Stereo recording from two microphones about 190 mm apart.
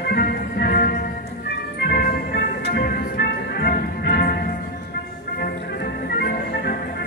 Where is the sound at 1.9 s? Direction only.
55° left (ahead or behind).